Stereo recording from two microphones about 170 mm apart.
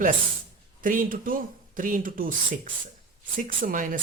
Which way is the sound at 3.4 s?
55° right (ahead or behind).